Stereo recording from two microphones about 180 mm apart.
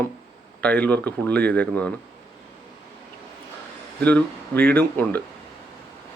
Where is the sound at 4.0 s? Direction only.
10° left (ahead or behind).